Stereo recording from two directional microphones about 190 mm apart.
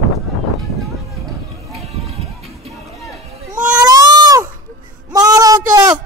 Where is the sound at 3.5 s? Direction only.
5° right (ahead or behind).